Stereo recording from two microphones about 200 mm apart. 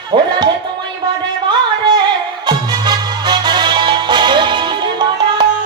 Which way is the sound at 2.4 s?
20° right (ahead or behind).